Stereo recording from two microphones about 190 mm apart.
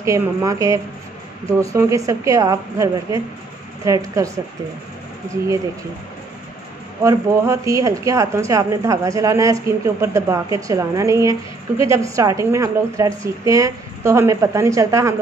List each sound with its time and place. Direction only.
0.0 s speech: 15° right (ahead or behind)
7.0 s speech: 15° right (ahead or behind)